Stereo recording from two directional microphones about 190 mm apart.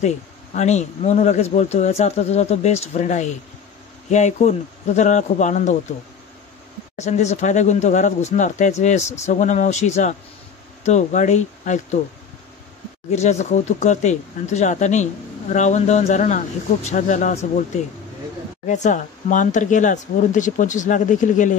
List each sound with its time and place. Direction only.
0.6 s speech: 35° left (ahead or behind)
7.0 s speech: 35° left (ahead or behind)
13.1 s speech: 35° left (ahead or behind)
18.7 s speech: 40° left (ahead or behind)